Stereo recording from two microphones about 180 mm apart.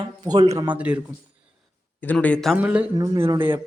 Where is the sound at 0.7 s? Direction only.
5° right (ahead or behind).